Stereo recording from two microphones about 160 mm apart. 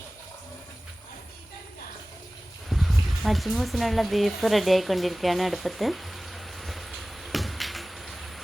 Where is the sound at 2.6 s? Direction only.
Centre (ahead or behind).